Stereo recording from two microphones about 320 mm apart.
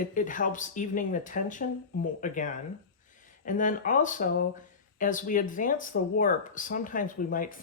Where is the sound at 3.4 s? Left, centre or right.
Left.